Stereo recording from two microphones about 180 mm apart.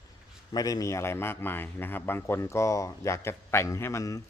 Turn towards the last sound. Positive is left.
turn(degrees=15)  # may be behind; listen again after turning